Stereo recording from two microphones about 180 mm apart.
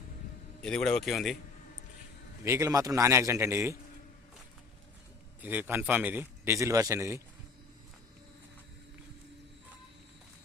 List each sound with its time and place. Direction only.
0.6 s speech: 5° left (ahead or behind)
2.4 s a man's voice: 15° right (ahead or behind)
5.4 s a man's voice: 10° right (ahead or behind)